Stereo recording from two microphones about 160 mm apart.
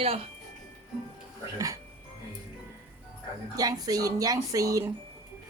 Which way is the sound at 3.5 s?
20° right (ahead or behind).